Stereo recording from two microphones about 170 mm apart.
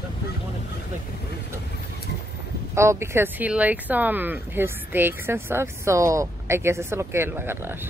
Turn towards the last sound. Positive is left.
turn(degrees=-15)  # may be behind; listen again after turning